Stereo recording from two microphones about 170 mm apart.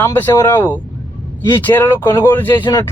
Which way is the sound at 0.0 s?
15° left (ahead or behind).